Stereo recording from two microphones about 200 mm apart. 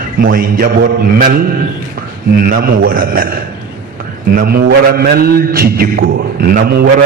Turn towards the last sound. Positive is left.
turn(degrees=-50)  # may be behind; listen again after turning